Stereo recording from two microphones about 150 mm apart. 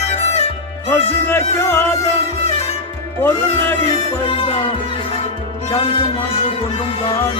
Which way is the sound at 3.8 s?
40° left (ahead or behind).